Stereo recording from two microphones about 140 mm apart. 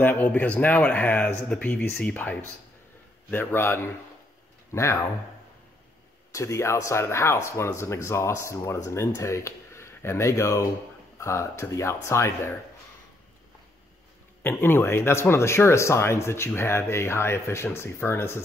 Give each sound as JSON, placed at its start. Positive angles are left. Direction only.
{"t": 0.0, "sound": "speech", "side_deg": 10}
{"t": 6.3, "sound": "speech", "side_deg": 20}
{"t": 14.4, "sound": "speech", "side_deg": 15}